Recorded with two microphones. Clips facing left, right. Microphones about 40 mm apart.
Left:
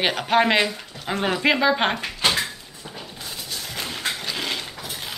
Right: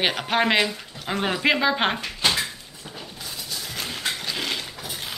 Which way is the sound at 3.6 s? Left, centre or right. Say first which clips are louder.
Left 1 dB; centre.